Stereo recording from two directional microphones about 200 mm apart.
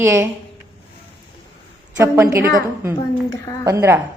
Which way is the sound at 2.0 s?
15° right (ahead or behind).